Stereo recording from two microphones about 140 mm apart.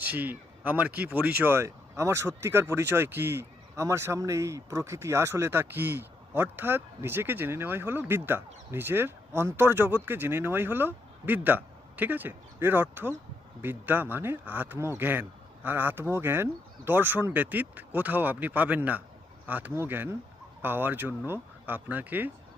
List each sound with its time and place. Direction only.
0.0 s speech: 10° right (ahead or behind)